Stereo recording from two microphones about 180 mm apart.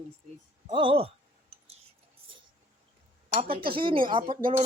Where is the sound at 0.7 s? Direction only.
30° right (ahead or behind).